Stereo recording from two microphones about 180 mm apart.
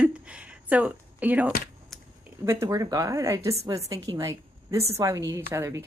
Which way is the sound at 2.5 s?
15° right (ahead or behind).